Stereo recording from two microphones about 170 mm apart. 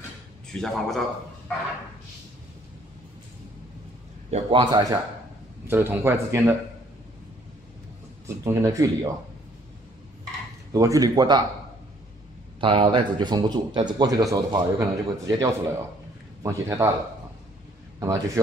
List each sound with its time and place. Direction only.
0.5 s a man's voice: 5° left (ahead or behind)
4.3 s speech: 30° right (ahead or behind)
5.7 s speech: 10° right (ahead or behind)
8.5 s speech: 15° right (ahead or behind)
10.7 s speech: 20° right (ahead or behind)
12.5 s speech: 30° right (ahead or behind); by 16.9 s 15° right (ahead or behind)
17.9 s a man's voice: 20° right (ahead or behind)